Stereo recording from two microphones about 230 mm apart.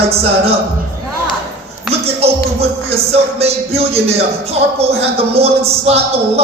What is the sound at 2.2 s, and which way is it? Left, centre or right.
Music, right.